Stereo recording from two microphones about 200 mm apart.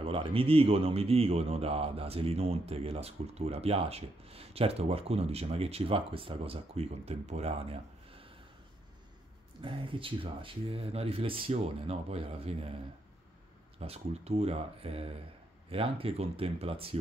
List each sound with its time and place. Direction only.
0.0 s a man's voice: 25° right (ahead or behind)
9.6 s a man's voice: 25° right (ahead or behind)
13.7 s a man's voice: 30° right (ahead or behind)